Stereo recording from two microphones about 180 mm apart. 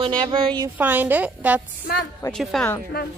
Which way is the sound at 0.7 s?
10° right (ahead or behind).